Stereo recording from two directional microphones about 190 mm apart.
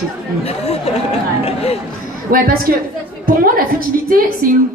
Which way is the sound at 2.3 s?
50° right (ahead or behind).